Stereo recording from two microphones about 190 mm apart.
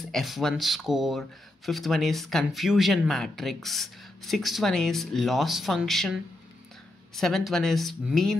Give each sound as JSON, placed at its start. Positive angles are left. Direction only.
{"t": 0.0, "sound": "speech", "side_deg": 0}